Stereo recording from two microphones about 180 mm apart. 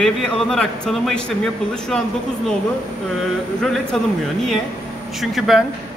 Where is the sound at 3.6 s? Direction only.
Centre (ahead or behind).